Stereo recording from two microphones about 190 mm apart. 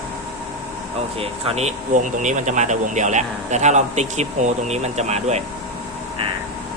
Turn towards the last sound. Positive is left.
turn(degrees=-35)  # may be behind; listen again after turning